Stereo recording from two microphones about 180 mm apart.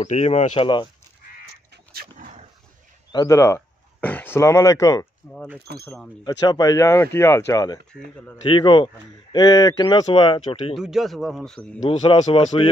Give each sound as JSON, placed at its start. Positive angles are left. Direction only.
{"t": 0.0, "sound": "speech", "side_deg": 40}
{"t": 1.4, "sound": "a sound", "side_deg": -60}
{"t": 3.1, "sound": "speech", "side_deg": 20}
{"t": 5.2, "sound": "a sound", "side_deg": 10}
{"t": 5.7, "sound": "speech", "side_deg": -70}
{"t": 6.2, "sound": "speech", "side_deg": 25}
{"t": 10.8, "sound": "speech", "side_deg": 0}
{"t": 11.9, "sound": "speech", "side_deg": 30}